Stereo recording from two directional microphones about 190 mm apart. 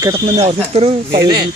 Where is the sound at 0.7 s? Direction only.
35° right (ahead or behind).